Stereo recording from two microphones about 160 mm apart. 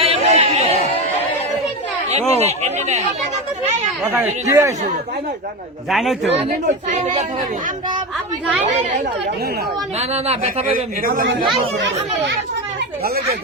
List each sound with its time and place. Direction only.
0.0 s chatter: 40° right (ahead or behind)
2.0 s speech: 45° right (ahead or behind)
4.0 s speech: 10° right (ahead or behind)
5.9 s a man's voice: centre (ahead or behind)
6.2 s speech: 40° right (ahead or behind)
10.0 s speech: 40° right (ahead or behind)
10.8 s a man's voice: 65° right (ahead or behind)
11.4 s speech: 35° right (ahead or behind)